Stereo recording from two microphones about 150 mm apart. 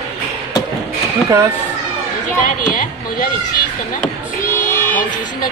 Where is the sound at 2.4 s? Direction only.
60° left (ahead or behind).